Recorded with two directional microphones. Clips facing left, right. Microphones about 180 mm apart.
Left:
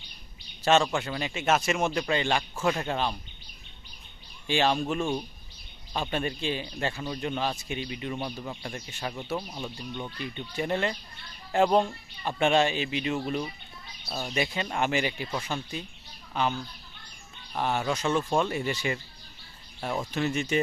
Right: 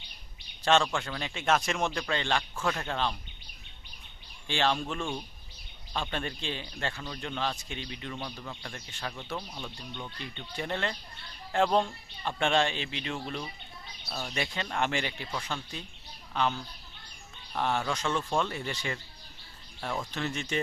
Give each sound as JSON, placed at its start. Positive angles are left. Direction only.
{"t": 0.6, "sound": "speech", "side_deg": 5}
{"t": 4.4, "sound": "speech", "side_deg": 10}
{"t": 8.2, "sound": "speech", "side_deg": 20}